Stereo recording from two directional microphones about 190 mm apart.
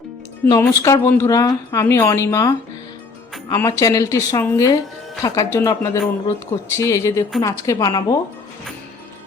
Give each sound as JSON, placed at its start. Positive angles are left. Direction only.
{"t": 0.4, "sound": "speech", "side_deg": 10}